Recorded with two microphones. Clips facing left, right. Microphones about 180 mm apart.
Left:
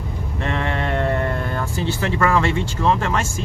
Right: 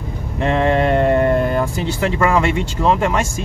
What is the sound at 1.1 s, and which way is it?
Speech, 20° right (ahead or behind).